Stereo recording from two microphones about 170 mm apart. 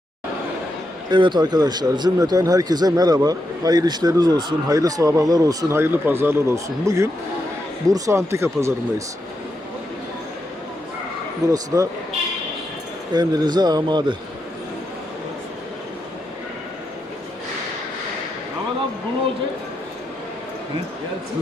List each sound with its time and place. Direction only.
1.1 s speech: 25° right (ahead or behind)
11.5 s speech: 20° right (ahead or behind)
13.1 s speech: 25° right (ahead or behind)